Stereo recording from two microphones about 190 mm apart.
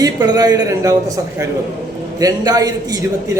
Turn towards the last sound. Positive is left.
turn(degrees=-20)  # may be behind; listen again after turning